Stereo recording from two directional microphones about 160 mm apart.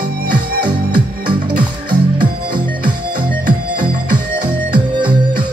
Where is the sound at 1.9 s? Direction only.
30° right (ahead or behind).